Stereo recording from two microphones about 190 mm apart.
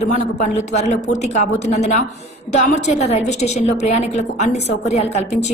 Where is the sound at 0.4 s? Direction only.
35° left (ahead or behind).